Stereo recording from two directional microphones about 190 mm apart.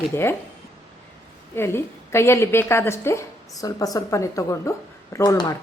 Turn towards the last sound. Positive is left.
turn(degrees=20)  # may be behind; listen again after turning